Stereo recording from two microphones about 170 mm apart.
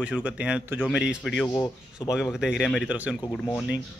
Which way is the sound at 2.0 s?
25° left (ahead or behind).